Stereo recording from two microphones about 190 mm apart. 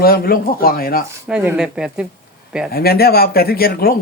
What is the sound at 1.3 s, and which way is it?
Speech, 5° right (ahead or behind).